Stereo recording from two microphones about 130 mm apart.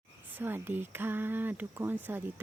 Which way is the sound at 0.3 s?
15° right (ahead or behind).